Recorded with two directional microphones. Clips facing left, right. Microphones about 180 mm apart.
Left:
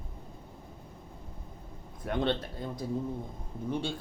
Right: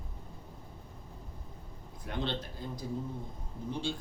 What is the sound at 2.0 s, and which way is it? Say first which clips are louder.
Speech: left 7 dB; 55° left (ahead or behind).